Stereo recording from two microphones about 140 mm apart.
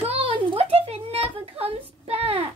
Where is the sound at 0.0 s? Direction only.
45° right (ahead or behind).